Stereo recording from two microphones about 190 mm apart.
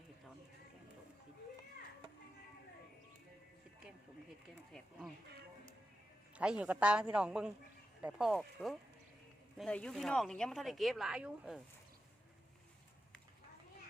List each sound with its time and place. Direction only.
6.3 s speech: 5° right (ahead or behind)